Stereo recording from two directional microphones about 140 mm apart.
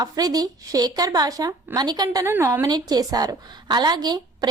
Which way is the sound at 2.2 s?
20° right (ahead or behind).